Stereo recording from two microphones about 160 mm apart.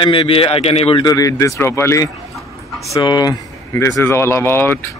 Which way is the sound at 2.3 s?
Centre (ahead or behind).